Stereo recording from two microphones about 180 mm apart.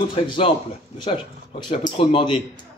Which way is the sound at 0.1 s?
30° left (ahead or behind).